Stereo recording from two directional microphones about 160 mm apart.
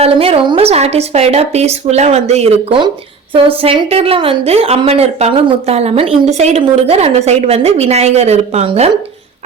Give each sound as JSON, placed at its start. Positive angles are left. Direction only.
{"t": 0.0, "sound": "a woman's voice", "side_deg": -35}